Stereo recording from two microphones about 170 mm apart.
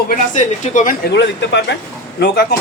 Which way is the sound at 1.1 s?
90° left.